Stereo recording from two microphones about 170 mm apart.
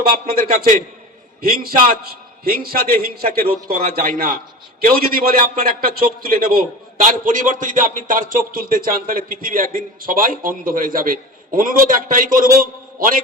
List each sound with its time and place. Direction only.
0.1 s a man's voice: 60° right (ahead or behind)